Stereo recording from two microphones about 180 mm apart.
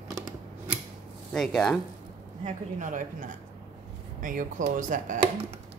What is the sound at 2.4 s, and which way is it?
A woman's voice, 45° right (ahead or behind).